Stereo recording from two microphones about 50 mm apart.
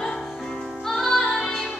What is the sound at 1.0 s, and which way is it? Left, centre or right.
Music, centre.